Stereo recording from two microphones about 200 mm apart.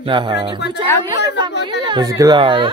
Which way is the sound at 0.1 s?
20° right (ahead or behind).